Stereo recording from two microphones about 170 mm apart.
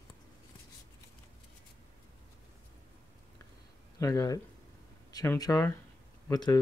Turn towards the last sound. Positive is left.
turn(degrees=25)  # may be behind; listen again after turning